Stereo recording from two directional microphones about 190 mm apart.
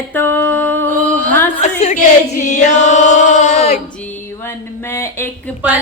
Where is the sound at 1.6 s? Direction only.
35° left (ahead or behind).